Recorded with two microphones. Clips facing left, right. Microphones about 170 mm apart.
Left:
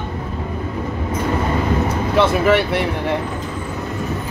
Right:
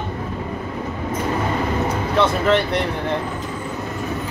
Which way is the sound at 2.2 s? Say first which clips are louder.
Left 3 dB; 5° left (ahead or behind).